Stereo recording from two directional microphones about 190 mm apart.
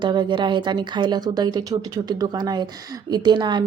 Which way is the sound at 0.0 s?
25° right (ahead or behind).